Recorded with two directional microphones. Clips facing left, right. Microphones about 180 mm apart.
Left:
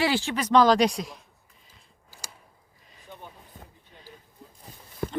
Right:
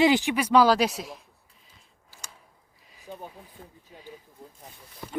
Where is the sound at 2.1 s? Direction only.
Centre (ahead or behind).